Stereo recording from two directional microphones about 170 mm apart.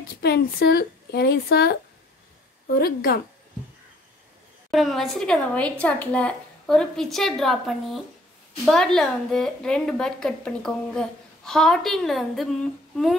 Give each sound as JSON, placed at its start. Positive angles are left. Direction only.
{"t": 0.2, "sound": "a woman's voice", "side_deg": 70}
{"t": 4.6, "sound": "a woman's voice", "side_deg": 0}